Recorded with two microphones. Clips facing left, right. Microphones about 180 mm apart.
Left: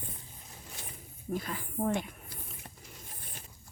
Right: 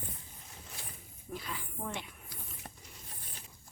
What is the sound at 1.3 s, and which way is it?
Speech, 45° left (ahead or behind).